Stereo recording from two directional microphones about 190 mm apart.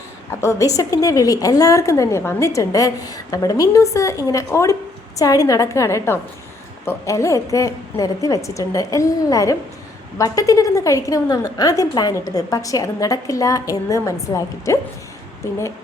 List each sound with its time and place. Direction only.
0.3 s a woman's voice: 15° left (ahead or behind)